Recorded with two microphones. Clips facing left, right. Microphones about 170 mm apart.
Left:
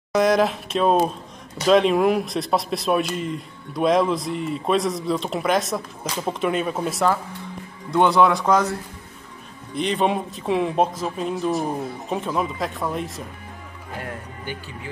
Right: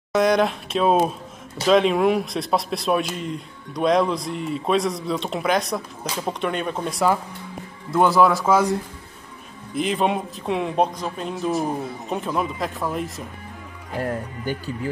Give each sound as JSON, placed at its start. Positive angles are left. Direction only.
{"t": 0.1, "sound": "a sound", "side_deg": 0}
{"t": 1.7, "sound": "a man's voice", "side_deg": 0}
{"t": 9.8, "sound": "a man's voice", "side_deg": 0}
{"t": 14.0, "sound": "speech", "side_deg": -40}